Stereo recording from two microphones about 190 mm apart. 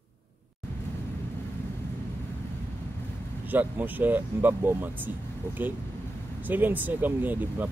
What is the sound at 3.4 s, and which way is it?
Speech, 10° right (ahead or behind).